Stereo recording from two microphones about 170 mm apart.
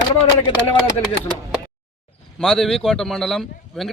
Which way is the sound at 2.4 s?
5° left (ahead or behind).